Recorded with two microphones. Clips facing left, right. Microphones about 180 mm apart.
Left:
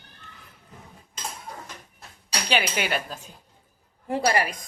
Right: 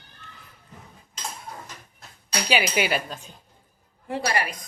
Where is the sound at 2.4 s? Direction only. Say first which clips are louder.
Right 2 dB; 10° right (ahead or behind).